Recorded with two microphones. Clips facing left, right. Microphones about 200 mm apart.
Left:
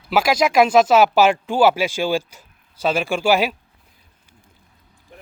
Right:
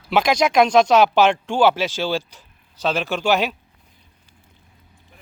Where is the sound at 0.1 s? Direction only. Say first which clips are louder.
Even; 5° left (ahead or behind).